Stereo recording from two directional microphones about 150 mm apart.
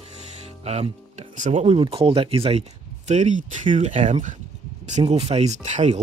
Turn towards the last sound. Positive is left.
turn(degrees=-50)  # may be behind; listen again after turning